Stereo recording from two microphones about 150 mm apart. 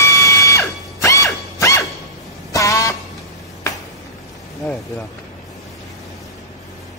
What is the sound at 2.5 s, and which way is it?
Vehicle horn, 20° left (ahead or behind).